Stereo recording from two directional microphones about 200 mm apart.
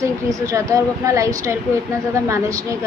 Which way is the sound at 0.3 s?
15° right (ahead or behind).